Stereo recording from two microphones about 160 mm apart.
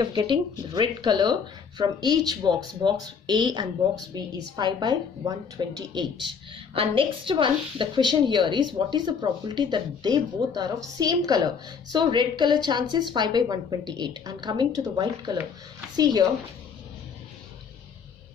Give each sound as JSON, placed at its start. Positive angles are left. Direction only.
{"t": 0.0, "sound": "a woman's voice", "side_deg": -30}